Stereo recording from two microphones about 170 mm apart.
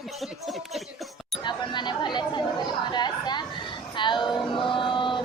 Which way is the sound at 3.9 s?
30° left (ahead or behind).